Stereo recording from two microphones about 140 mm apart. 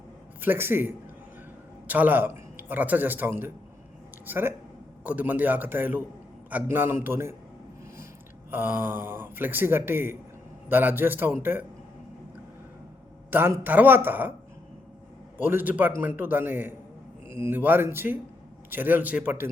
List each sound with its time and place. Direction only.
0.4 s a man's voice: 15° right (ahead or behind)
8.4 s a man's voice: 15° right (ahead or behind)
13.3 s a man's voice: 15° right (ahead or behind)
15.4 s a man's voice: 15° right (ahead or behind)